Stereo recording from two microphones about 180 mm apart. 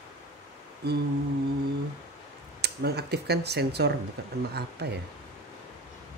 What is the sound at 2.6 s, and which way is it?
Speech, 65° right (ahead or behind).